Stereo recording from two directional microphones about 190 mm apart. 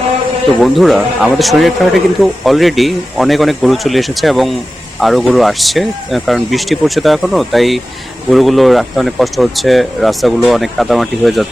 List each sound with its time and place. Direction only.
0.6 s speech: centre (ahead or behind)